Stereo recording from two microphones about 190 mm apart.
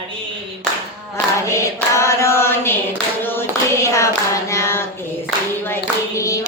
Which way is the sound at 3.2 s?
10° left (ahead or behind).